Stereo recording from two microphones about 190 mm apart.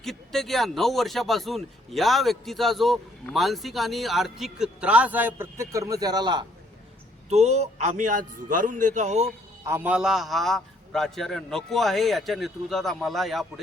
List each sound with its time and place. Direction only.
0.0 s speech: centre (ahead or behind); by 6.4 s 20° right (ahead or behind)
7.3 s a man's voice: 35° right (ahead or behind)
9.6 s speech: 10° right (ahead or behind)